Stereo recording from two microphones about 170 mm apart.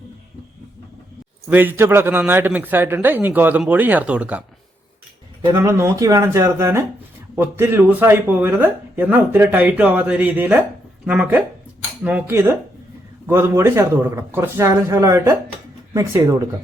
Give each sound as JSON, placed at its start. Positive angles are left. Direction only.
{"t": 1.5, "sound": "speech", "side_deg": -10}
{"t": 5.5, "sound": "speech", "side_deg": -15}